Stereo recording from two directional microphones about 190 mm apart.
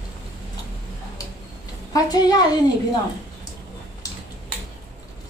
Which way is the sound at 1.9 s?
20° left (ahead or behind).